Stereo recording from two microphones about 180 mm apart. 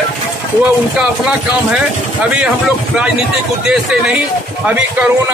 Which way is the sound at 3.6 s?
5° right (ahead or behind).